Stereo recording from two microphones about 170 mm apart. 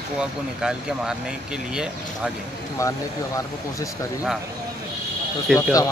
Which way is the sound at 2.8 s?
20° left (ahead or behind).